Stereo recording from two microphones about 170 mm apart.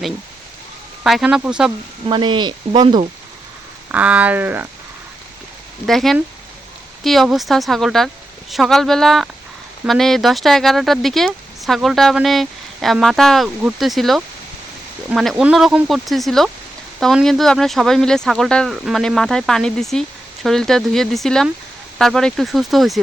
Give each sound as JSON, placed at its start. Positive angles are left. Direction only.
{"t": 1.0, "sound": "speech", "side_deg": -5}
{"t": 2.0, "sound": "speech", "side_deg": -30}
{"t": 3.9, "sound": "speech", "side_deg": -10}
{"t": 5.8, "sound": "speech", "side_deg": 0}